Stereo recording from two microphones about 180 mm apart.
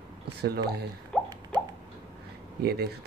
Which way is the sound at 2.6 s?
60° right (ahead or behind).